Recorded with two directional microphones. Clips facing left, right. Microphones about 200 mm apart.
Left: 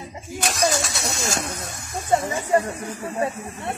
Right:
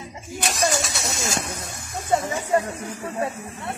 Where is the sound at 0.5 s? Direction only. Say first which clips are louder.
Left 1 dB; centre (ahead or behind).